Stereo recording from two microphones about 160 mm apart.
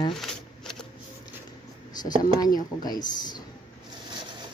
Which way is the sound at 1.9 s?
25° left (ahead or behind).